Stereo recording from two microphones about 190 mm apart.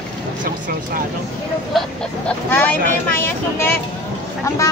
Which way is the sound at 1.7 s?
Centre (ahead or behind).